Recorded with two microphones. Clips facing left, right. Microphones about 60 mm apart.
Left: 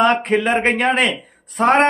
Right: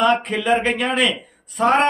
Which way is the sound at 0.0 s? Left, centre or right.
Left.